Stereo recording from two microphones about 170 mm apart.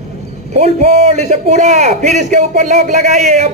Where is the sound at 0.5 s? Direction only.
40° right (ahead or behind).